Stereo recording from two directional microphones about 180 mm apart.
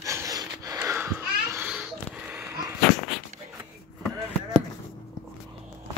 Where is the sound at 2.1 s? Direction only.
5° right (ahead or behind).